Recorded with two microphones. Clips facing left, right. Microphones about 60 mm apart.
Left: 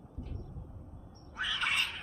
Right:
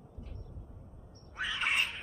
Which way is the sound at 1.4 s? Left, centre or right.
Centre.